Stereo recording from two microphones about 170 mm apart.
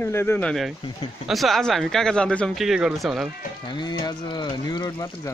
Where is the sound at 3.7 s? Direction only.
25° left (ahead or behind).